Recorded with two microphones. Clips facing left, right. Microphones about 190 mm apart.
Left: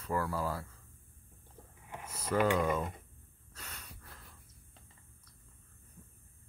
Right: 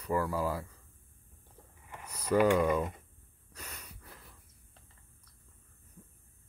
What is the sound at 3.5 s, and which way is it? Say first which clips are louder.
Gasp: right 2 dB; 10° right (ahead or behind).